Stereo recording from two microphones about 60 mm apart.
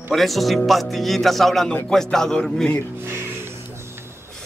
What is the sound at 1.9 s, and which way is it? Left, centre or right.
Music, centre.